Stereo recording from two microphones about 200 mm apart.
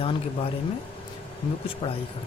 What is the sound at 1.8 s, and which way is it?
Speech, 25° left (ahead or behind).